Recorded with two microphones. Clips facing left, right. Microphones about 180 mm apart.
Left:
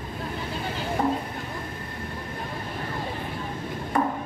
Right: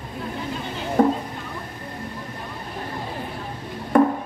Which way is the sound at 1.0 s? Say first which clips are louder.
Right 8 dB; 50° right (ahead or behind).